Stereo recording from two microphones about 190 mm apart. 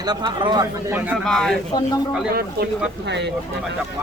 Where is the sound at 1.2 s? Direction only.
Centre (ahead or behind).